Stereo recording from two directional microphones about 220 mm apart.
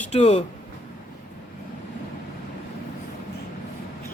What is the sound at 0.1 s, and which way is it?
Speech, 30° left (ahead or behind).